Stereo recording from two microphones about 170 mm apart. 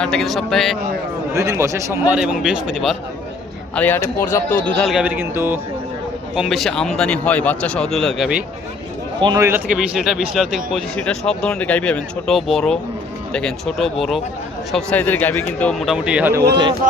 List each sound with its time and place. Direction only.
0.0 s a man's voice: 5° left (ahead or behind)
1.4 s speech: 15° right (ahead or behind)
3.8 s speech: 10° left (ahead or behind)
4.8 s speech: 5° right (ahead or behind)
6.3 s a man's voice: centre (ahead or behind)
9.2 s speech: 20° right (ahead or behind)
9.7 s a man's voice: 5° right (ahead or behind)